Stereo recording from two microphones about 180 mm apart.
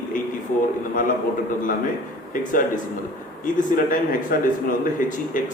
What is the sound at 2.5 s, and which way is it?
A man's voice, 50° left (ahead or behind).